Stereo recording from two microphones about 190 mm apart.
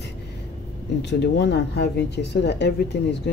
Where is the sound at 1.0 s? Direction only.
65° left (ahead or behind).